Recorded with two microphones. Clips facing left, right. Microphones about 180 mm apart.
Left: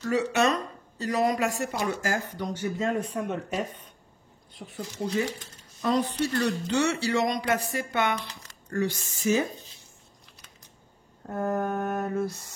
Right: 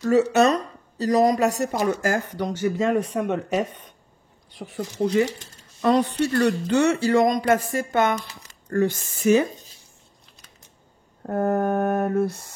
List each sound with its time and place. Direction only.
0.0 s speech: 40° right (ahead or behind); by 4.8 s 90° right
5.8 s speech: 70° right (ahead or behind)
11.2 s a sound: 55° right (ahead or behind)